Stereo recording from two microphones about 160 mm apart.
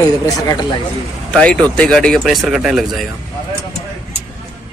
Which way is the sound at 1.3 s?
5° left (ahead or behind).